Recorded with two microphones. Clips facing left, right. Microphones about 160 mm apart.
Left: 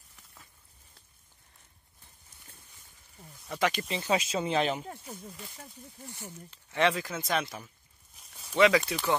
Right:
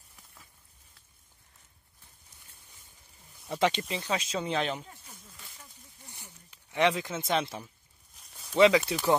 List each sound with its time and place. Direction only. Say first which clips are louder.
3.4 s speech: right 2 dB; 25° right (ahead or behind)
3.8 s speech: left 3 dB; 5° left (ahead or behind)
6.5 s speech: right 1 dB; 15° right (ahead or behind)
8.2 s a sound: even; centre (ahead or behind)
8.5 s speech: right 2 dB; 25° right (ahead or behind)
8.8 s speech: right 3 dB; 10° right (ahead or behind)